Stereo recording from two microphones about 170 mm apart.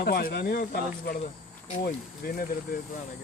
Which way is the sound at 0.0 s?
60° left (ahead or behind).